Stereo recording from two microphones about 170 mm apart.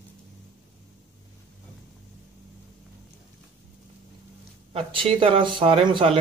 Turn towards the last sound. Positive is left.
turn(degrees=-30)  # may be behind; listen again after turning